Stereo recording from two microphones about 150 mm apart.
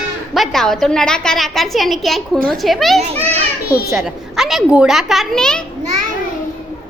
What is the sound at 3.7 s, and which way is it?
Speech, 90° left.